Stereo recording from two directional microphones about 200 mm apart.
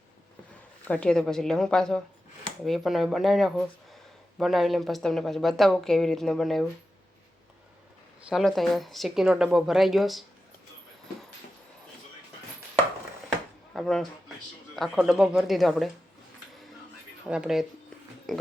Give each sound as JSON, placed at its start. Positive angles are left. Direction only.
{"t": 0.9, "sound": "a woman's voice", "side_deg": 5}
{"t": 8.3, "sound": "a woman's voice", "side_deg": 0}
{"t": 13.7, "sound": "a woman's voice", "side_deg": 0}
{"t": 17.2, "sound": "a woman's voice", "side_deg": -5}